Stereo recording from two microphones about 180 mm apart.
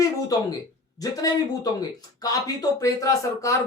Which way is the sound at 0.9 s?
20° left (ahead or behind).